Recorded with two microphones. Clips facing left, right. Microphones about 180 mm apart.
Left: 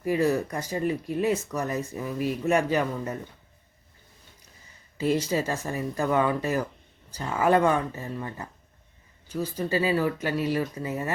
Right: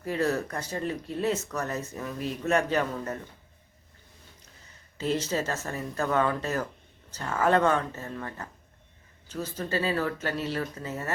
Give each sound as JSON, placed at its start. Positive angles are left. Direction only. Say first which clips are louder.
{"t": 0.0, "sound": "speech", "louder": "left 4 dB", "side_deg": 10}
{"t": 4.9, "sound": "speech", "louder": "left 3 dB", "side_deg": 10}